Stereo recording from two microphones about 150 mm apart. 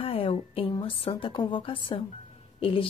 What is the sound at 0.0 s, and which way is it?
A woman's voice, 40° left (ahead or behind).